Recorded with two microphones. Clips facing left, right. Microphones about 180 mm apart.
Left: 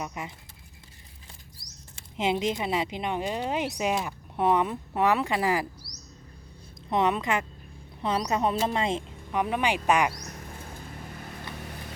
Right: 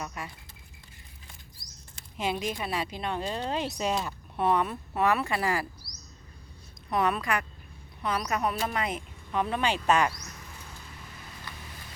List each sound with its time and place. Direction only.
0.0 s speech: 20° left (ahead or behind)
2.0 s speech: 20° left (ahead or behind)
6.9 s speech: 20° left (ahead or behind)
9.3 s speech: 15° left (ahead or behind)
10.2 s a sound: 50° left (ahead or behind)
11.5 s vehicle: 60° left (ahead or behind)